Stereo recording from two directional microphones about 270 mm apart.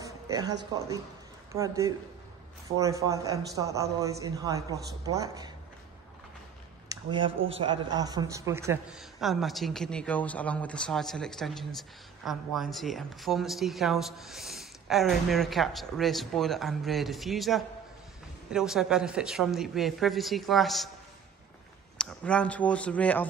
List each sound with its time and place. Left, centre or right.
0.0 s a man's voice: centre
6.9 s speech: centre
21.9 s speech: centre